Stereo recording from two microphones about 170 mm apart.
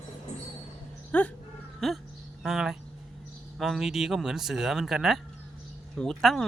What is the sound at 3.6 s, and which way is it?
Speech, centre (ahead or behind).